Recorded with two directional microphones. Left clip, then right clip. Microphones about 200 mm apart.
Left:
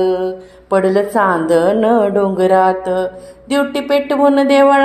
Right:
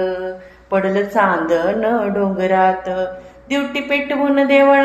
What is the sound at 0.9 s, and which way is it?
A woman's voice, 45° left (ahead or behind).